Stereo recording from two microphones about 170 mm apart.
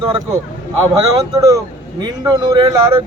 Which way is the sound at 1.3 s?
20° right (ahead or behind).